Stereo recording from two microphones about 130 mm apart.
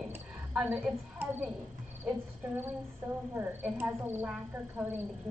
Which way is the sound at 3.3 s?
15° right (ahead or behind).